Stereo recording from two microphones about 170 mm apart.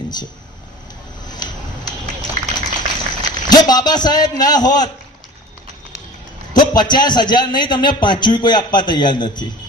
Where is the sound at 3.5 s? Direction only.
25° left (ahead or behind).